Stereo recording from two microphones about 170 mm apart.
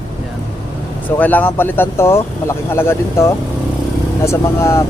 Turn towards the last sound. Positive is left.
turn(degrees=15)  # may be behind; listen again after turning